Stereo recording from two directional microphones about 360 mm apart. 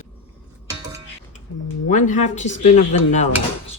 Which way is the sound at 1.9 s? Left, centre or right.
Centre.